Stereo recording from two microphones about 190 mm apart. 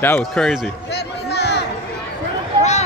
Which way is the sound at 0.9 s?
60° left (ahead or behind).